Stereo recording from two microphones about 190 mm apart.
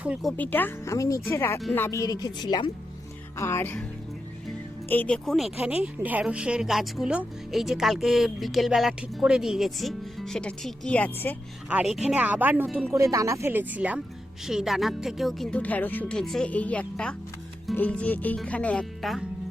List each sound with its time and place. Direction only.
0.0 s speech: 5° right (ahead or behind)
4.9 s speech: 5° left (ahead or behind)
11.7 s speech: 5° right (ahead or behind)